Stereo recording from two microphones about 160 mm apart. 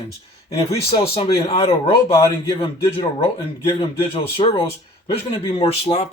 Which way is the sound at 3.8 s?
35° left (ahead or behind).